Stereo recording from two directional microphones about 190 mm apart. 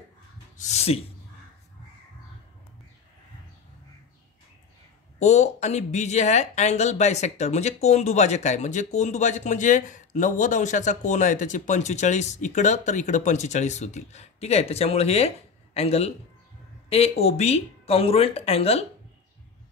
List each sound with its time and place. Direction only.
0.6 s speech: 35° left (ahead or behind)
5.2 s speech: 35° left (ahead or behind)